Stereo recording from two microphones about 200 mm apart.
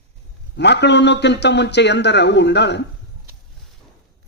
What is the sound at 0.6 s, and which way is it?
A man's voice, 60° left (ahead or behind).